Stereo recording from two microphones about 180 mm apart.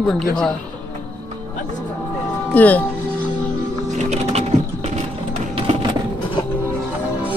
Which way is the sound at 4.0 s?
40° right (ahead or behind).